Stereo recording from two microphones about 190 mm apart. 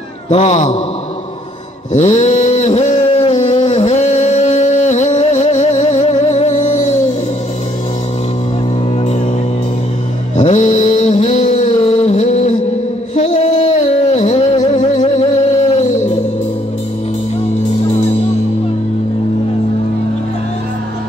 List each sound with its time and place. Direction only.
0.3 s a man's voice: 35° left (ahead or behind)
1.9 s a sound: 40° left (ahead or behind)
10.3 s mantra: 40° left (ahead or behind)
13.1 s music: 40° left (ahead or behind)